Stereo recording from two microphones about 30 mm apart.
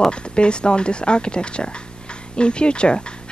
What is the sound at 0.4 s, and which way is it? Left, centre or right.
Speech, left.